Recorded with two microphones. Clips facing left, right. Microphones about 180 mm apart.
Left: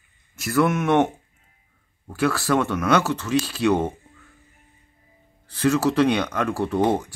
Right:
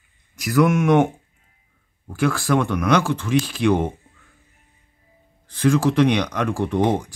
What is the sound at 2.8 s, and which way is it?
Speech, 5° left (ahead or behind).